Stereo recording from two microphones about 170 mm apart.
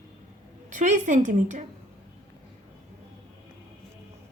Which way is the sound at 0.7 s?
45° right (ahead or behind).